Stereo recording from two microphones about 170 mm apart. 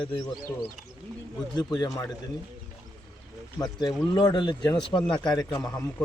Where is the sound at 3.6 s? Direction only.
20° left (ahead or behind).